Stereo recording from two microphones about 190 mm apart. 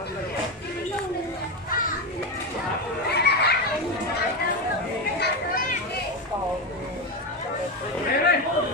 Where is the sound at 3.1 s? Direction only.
60° left (ahead or behind).